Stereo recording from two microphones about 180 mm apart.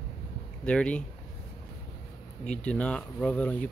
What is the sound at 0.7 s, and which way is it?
Speech, 5° left (ahead or behind).